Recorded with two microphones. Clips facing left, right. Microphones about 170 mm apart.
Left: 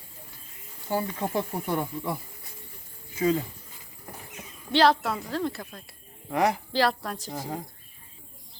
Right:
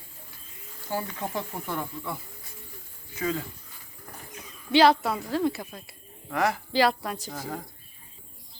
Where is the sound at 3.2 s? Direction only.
25° left (ahead or behind).